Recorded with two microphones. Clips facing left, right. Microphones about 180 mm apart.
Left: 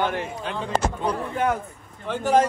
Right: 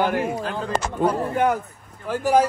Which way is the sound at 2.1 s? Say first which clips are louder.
Right 1 dB; 5° right (ahead or behind).